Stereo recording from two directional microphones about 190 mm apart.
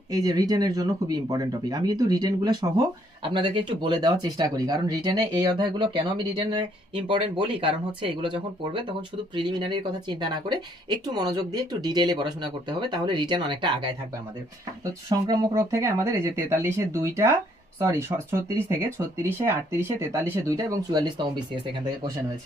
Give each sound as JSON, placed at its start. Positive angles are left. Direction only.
{"t": 0.1, "sound": "speech", "side_deg": -20}